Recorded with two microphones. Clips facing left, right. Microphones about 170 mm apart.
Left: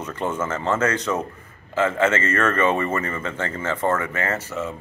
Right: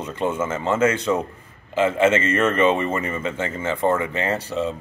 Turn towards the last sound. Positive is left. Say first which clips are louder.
# right 2 dB
turn(degrees=-15)  # may be behind; listen again after turning